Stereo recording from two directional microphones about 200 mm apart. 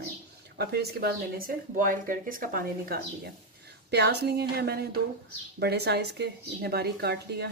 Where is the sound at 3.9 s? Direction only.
55° right (ahead or behind).